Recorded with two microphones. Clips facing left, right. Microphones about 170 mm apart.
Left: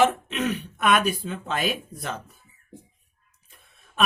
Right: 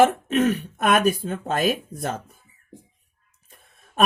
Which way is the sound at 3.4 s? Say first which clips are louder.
Right 3 dB; 50° right (ahead or behind).